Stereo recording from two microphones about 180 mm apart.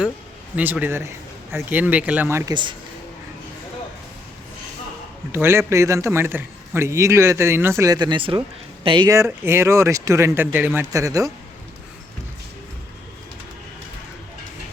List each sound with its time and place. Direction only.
0.5 s a man's voice: 10° right (ahead or behind)
2.5 s speech: 25° right (ahead or behind)
5.3 s a man's voice: 15° right (ahead or behind); by 9.0 s 30° right (ahead or behind)
9.0 s a man's voice: 15° right (ahead or behind)